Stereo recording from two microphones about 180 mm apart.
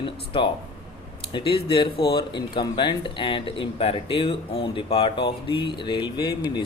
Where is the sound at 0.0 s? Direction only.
30° left (ahead or behind).